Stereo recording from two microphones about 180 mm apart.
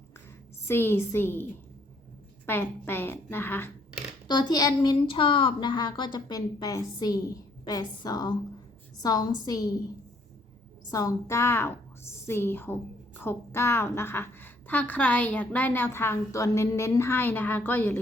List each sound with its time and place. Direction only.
0.7 s a woman's voice: 15° left (ahead or behind)
2.5 s a woman's voice: 10° left (ahead or behind)
4.3 s a woman's voice: 25° left (ahead or behind)
10.8 s a woman's voice: 20° left (ahead or behind)